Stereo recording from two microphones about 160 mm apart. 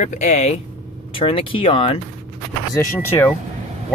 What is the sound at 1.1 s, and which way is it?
Speech, 35° left (ahead or behind).